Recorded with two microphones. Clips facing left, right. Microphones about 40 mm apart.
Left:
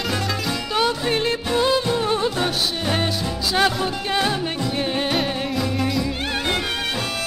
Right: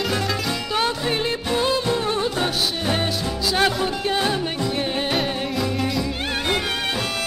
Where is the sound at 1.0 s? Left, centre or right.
Centre.